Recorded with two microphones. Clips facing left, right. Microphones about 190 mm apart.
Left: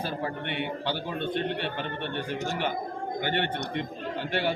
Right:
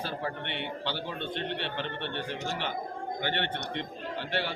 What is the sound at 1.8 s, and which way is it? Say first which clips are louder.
Speech: left 2 dB; 50° left (ahead or behind).